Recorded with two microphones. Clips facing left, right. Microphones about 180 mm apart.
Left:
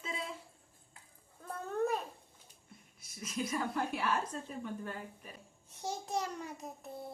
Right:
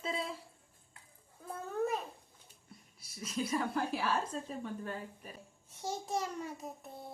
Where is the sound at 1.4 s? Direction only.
Centre (ahead or behind).